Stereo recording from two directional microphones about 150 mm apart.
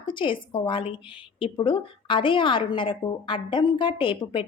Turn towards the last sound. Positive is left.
turn(degrees=35)  # may be behind; listen again after turning